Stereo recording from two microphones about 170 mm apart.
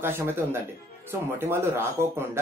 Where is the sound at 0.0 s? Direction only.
15° right (ahead or behind).